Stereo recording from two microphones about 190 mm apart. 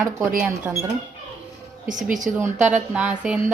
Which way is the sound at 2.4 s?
10° right (ahead or behind).